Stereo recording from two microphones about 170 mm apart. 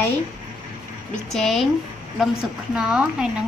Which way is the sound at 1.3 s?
Centre (ahead or behind).